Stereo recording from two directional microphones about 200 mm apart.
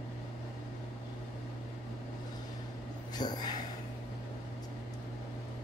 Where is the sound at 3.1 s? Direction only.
20° left (ahead or behind).